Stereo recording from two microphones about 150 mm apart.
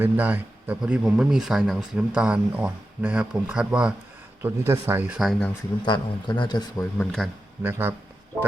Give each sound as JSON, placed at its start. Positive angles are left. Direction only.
{"t": 0.0, "sound": "speech", "side_deg": -10}
{"t": 4.4, "sound": "speech", "side_deg": -15}
{"t": 5.8, "sound": "a man's voice", "side_deg": 30}
{"t": 7.0, "sound": "a man's voice", "side_deg": 0}
{"t": 7.6, "sound": "speech", "side_deg": -15}